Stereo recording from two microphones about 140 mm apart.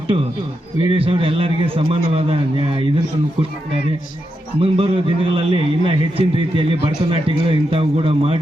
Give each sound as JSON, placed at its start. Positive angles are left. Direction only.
{"t": 0.1, "sound": "a man's voice", "side_deg": -40}
{"t": 4.6, "sound": "a man's voice", "side_deg": -40}